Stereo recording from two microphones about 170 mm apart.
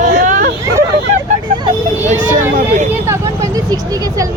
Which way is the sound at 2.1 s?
45° right (ahead or behind).